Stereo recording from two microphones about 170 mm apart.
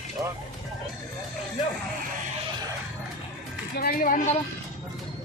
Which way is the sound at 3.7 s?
60° left (ahead or behind).